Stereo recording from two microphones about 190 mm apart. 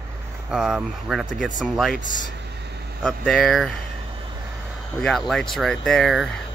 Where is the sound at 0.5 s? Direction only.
5° right (ahead or behind).